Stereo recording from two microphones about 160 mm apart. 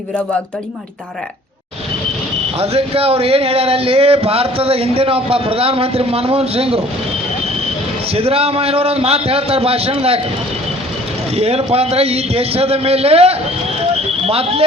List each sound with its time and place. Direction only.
2.6 s speech: 40° right (ahead or behind)
8.1 s speech: 40° right (ahead or behind)
11.3 s speech: 40° right (ahead or behind)